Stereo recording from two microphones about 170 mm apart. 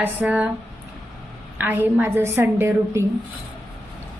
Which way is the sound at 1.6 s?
10° right (ahead or behind).